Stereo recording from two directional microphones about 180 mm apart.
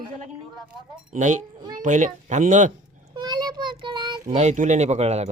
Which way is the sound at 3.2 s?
25° right (ahead or behind).